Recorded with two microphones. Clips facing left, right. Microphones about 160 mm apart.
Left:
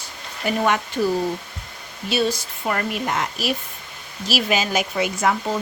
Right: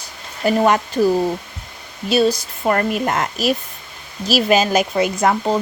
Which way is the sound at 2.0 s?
40° right (ahead or behind).